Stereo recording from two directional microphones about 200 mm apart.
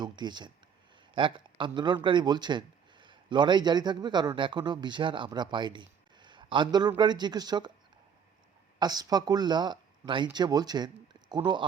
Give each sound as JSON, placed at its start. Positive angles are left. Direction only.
{"t": 0.0, "sound": "speech", "side_deg": -20}
{"t": 8.8, "sound": "speech", "side_deg": -20}